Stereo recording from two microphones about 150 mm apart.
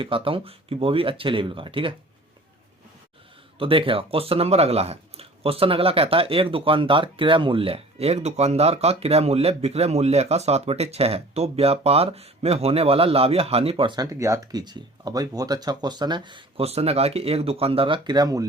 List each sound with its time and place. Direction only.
0.0 s speech: 35° right (ahead or behind)
3.6 s speech: 35° right (ahead or behind)